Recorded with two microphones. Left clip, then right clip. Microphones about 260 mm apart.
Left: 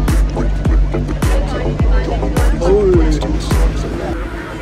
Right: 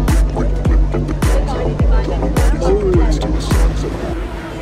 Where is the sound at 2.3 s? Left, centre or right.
Centre.